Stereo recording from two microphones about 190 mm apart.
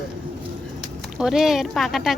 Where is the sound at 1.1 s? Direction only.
Centre (ahead or behind).